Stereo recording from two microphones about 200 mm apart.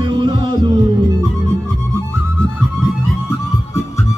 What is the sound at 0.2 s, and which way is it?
Music, 25° right (ahead or behind).